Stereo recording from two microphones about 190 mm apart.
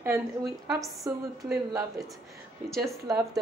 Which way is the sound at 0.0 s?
15° right (ahead or behind).